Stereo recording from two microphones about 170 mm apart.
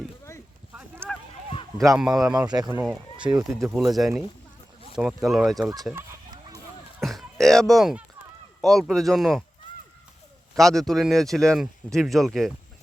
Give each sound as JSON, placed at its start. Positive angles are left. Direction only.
{"t": 2.0, "sound": "speech", "side_deg": -5}
{"t": 2.3, "sound": "speech", "side_deg": -25}
{"t": 3.8, "sound": "speech", "side_deg": 0}
{"t": 7.0, "sound": "a sound", "side_deg": 0}
{"t": 8.6, "sound": "speech", "side_deg": 0}
{"t": 10.5, "sound": "speech", "side_deg": 0}